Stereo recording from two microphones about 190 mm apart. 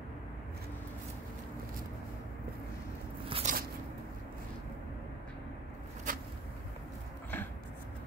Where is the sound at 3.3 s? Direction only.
40° right (ahead or behind).